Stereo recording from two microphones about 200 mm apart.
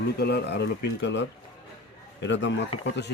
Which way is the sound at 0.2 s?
55° left (ahead or behind).